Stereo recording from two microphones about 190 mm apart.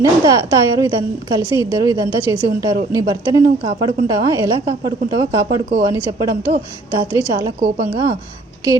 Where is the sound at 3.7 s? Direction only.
30° right (ahead or behind).